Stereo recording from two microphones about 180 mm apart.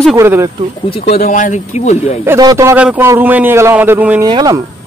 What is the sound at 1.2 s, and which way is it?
Speech, 45° left (ahead or behind).